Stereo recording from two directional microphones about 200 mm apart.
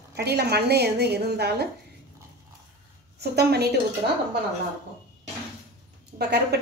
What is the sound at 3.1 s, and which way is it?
Speech, 55° right (ahead or behind).